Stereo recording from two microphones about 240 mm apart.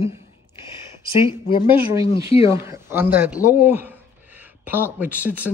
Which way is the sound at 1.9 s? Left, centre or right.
Centre.